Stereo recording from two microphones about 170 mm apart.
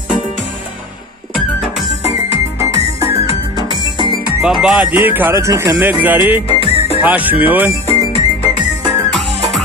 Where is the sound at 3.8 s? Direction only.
30° right (ahead or behind).